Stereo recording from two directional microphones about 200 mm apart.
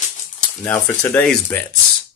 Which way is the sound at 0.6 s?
10° left (ahead or behind).